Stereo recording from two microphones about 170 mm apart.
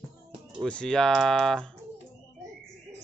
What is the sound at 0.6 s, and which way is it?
Speech, 5° left (ahead or behind).